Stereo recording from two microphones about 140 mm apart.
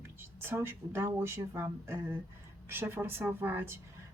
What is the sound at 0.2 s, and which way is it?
A woman's voice, 15° right (ahead or behind).